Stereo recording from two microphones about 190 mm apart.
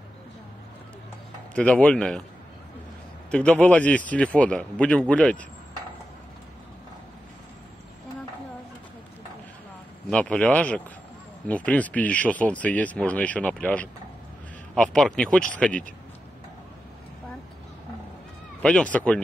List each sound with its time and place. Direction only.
1.5 s speech: 5° left (ahead or behind)
3.3 s speech: 5° left (ahead or behind)
10.0 s speech: 5° left (ahead or behind)
18.6 s speech: 5° left (ahead or behind)